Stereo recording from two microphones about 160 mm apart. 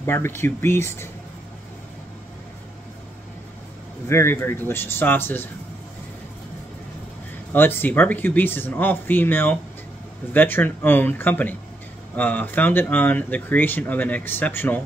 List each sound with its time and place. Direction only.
0.0 s speech: 15° left (ahead or behind)
4.1 s speech: 15° left (ahead or behind)
7.5 s speech: 15° left (ahead or behind)